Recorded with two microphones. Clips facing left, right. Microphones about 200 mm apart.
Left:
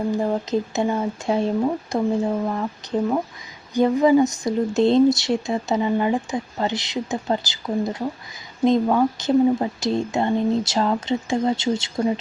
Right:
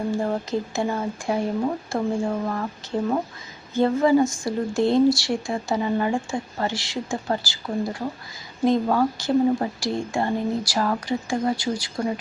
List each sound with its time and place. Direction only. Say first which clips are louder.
0.1 s speech: left 3 dB; 20° left (ahead or behind)